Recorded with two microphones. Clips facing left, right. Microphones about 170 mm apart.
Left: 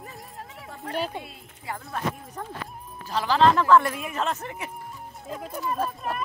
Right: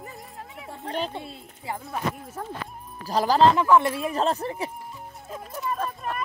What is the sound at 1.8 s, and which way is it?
Speech, centre (ahead or behind).